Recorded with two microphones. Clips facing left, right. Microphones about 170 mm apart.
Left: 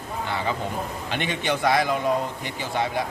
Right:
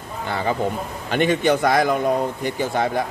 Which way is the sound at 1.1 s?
45° right (ahead or behind).